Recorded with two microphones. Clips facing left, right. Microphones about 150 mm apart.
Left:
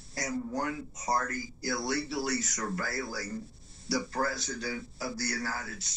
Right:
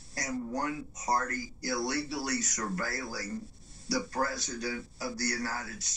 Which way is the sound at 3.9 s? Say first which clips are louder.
Even; 25° left (ahead or behind).